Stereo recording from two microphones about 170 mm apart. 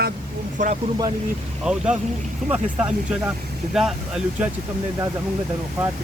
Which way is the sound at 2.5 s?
10° right (ahead or behind).